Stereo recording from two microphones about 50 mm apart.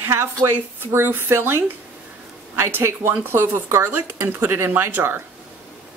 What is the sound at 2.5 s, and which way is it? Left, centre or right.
Speech, right.